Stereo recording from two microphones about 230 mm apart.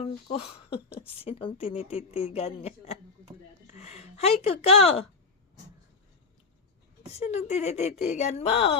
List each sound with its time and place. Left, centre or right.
0.3 s a woman's voice: left
7.1 s a woman's voice: left